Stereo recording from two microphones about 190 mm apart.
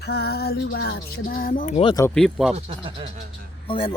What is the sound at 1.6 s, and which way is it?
Speech, 30° left (ahead or behind).